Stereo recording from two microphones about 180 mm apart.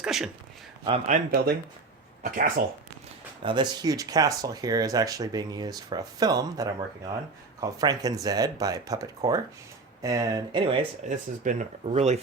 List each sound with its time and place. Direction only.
0.0 s speech: centre (ahead or behind)
0.9 s a man's voice: 40° right (ahead or behind)
3.4 s speech: 25° right (ahead or behind)
11.0 s a man's voice: 40° right (ahead or behind)